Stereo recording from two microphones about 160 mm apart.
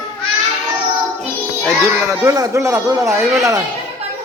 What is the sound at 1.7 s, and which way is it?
Speech, 15° right (ahead or behind).